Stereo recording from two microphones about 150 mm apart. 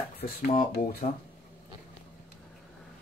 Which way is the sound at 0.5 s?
50° left (ahead or behind).